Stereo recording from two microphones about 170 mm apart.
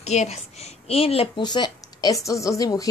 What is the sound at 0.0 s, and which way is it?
A woman's voice, 40° left (ahead or behind).